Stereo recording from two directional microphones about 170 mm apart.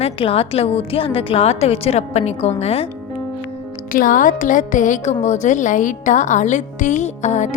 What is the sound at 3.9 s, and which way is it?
A woman's voice, 50° left (ahead or behind).